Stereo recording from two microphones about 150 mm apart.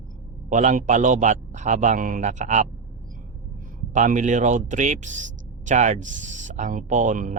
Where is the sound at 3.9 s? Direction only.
55° right (ahead or behind).